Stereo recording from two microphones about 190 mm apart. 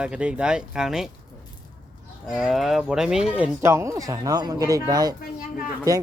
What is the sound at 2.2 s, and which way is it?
Speech, centre (ahead or behind).